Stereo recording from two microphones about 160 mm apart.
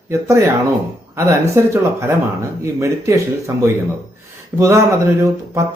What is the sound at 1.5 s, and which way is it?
Speech, 15° right (ahead or behind).